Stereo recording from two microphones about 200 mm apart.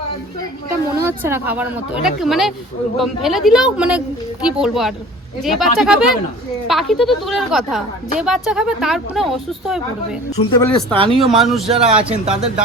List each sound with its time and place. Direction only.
1.0 s a woman's voice: 10° right (ahead or behind)
10.3 s speech: 25° left (ahead or behind)
10.6 s a woman's voice: 5° left (ahead or behind)
10.9 s speech: 25° right (ahead or behind)
11.3 s a woman's voice: centre (ahead or behind)
11.7 s speech: 30° right (ahead or behind)